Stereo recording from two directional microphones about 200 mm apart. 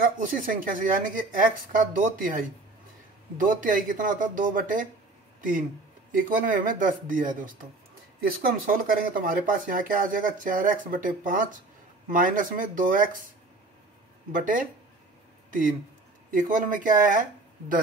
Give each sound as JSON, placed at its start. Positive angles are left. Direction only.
{"t": 0.0, "sound": "speech", "side_deg": -45}
{"t": 14.3, "sound": "speech", "side_deg": -40}
{"t": 16.3, "sound": "speech", "side_deg": -40}